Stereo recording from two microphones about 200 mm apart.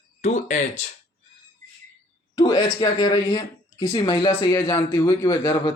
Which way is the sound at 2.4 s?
20° left (ahead or behind).